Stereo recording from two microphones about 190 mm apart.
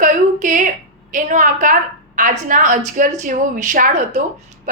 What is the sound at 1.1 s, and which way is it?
A woman's voice, 45° right (ahead or behind).